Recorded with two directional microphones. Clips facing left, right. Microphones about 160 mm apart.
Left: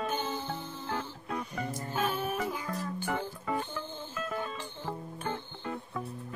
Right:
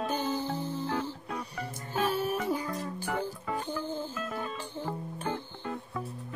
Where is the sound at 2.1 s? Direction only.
35° right (ahead or behind).